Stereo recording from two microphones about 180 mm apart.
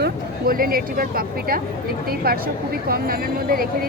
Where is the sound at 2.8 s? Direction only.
55° right (ahead or behind).